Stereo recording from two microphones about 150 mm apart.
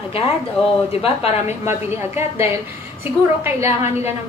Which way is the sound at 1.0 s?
40° left (ahead or behind).